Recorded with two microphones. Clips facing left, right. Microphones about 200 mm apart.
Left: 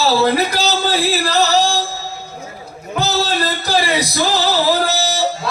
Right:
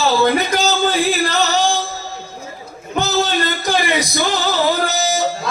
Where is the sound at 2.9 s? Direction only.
35° left (ahead or behind).